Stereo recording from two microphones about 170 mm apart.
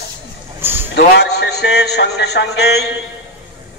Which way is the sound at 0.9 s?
75° left (ahead or behind).